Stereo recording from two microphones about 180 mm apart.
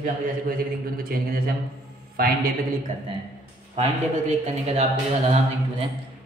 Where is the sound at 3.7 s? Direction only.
40° right (ahead or behind).